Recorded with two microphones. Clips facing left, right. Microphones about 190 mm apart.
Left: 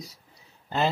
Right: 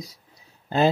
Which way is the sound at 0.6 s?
45° right (ahead or behind).